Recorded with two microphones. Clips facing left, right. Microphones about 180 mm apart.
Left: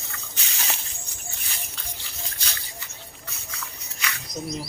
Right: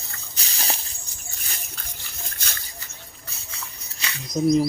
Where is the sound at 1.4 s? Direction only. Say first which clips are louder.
Right 3 dB; 45° right (ahead or behind).